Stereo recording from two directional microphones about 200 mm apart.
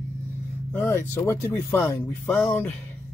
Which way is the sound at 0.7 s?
15° left (ahead or behind).